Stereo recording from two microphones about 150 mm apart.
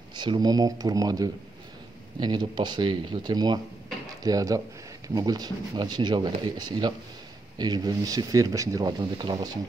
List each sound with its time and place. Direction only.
0.1 s speech: 30° right (ahead or behind)